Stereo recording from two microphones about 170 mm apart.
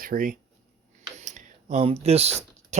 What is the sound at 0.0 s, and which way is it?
Speech, 55° right (ahead or behind).